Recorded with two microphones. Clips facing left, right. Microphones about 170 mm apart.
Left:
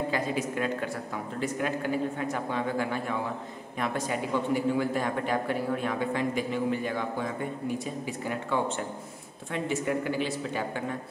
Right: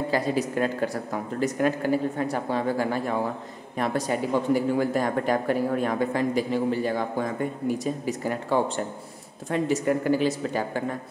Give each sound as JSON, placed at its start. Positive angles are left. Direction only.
{"t": 0.1, "sound": "a man's voice", "side_deg": -35}